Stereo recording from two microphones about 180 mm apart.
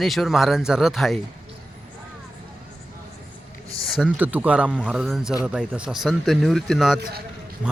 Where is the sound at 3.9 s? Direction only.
5° right (ahead or behind).